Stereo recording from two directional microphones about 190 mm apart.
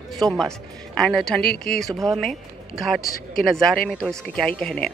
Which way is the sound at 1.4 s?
50° left (ahead or behind).